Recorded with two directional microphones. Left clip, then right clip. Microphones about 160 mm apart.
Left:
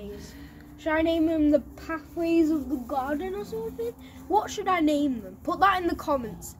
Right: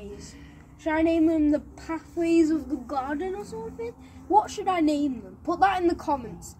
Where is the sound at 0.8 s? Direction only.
10° left (ahead or behind).